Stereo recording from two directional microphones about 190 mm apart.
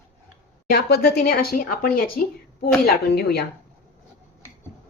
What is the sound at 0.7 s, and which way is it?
A woman's voice, 55° left (ahead or behind).